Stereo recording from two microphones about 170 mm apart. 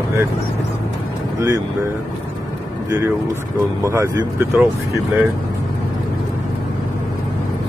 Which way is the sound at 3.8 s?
15° right (ahead or behind).